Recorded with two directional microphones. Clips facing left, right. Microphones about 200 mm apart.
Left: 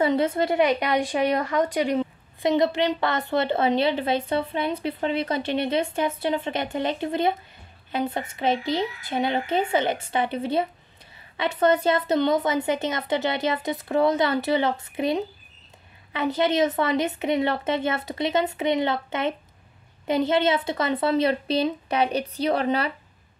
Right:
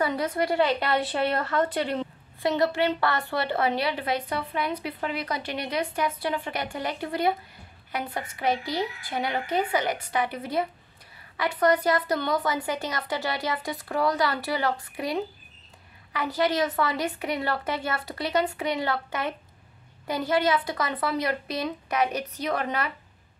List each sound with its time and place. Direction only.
0.0 s speech: 25° left (ahead or behind)